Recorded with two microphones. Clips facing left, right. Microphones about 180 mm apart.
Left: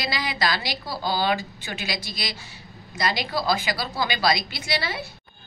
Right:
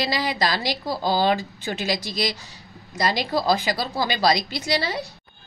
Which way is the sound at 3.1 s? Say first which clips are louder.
Right 3 dB; 35° right (ahead or behind).